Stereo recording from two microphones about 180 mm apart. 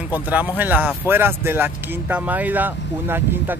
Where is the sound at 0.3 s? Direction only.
10° right (ahead or behind).